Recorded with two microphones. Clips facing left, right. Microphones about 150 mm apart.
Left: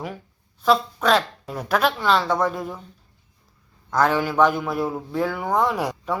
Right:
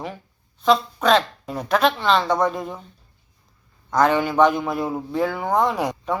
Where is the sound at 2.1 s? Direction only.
20° right (ahead or behind).